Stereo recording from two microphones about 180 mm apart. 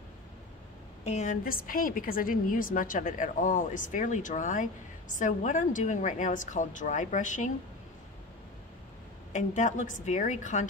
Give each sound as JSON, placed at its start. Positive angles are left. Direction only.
{"t": 1.0, "sound": "a woman's voice", "side_deg": 40}
{"t": 9.3, "sound": "a woman's voice", "side_deg": 45}